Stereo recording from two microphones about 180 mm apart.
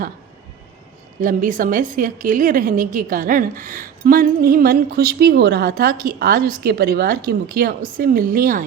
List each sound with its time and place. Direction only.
1.2 s a woman's voice: 50° right (ahead or behind)